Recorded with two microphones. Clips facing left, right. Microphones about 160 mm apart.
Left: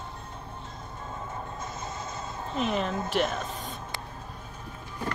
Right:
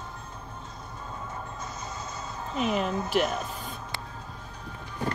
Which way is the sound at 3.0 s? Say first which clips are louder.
Right 1 dB; 5° right (ahead or behind).